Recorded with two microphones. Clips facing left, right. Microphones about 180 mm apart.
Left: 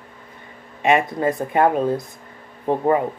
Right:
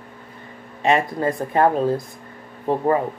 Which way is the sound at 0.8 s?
15° left (ahead or behind).